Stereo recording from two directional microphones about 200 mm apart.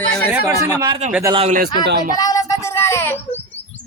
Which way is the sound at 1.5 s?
45° right (ahead or behind).